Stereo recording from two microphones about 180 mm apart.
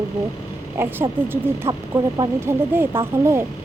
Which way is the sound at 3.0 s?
15° right (ahead or behind).